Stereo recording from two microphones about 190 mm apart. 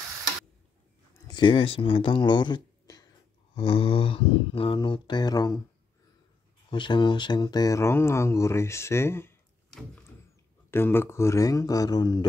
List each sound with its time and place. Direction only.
1.2 s speech: 25° left (ahead or behind)
3.5 s mantra: 30° left (ahead or behind)
6.7 s speech: 25° left (ahead or behind)
9.7 s door: centre (ahead or behind)
10.7 s speech: 10° left (ahead or behind)